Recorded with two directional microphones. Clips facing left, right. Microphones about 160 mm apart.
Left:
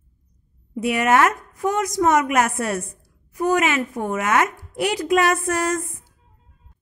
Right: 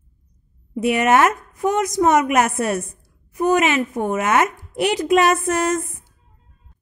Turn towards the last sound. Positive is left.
turn(degrees=-20)  # may be behind; listen again after turning